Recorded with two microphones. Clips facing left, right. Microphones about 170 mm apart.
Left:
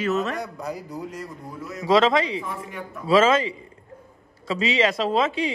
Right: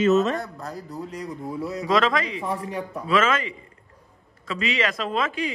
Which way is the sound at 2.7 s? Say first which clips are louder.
Right 5 dB; 35° right (ahead or behind).